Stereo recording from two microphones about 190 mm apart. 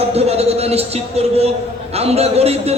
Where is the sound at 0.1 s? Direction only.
35° right (ahead or behind).